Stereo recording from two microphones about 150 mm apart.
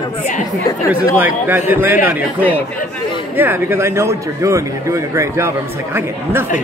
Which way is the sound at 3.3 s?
15° right (ahead or behind).